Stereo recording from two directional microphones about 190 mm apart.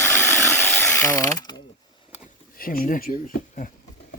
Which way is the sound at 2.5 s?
50° left (ahead or behind).